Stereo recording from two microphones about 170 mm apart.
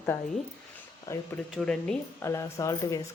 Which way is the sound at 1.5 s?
5° left (ahead or behind).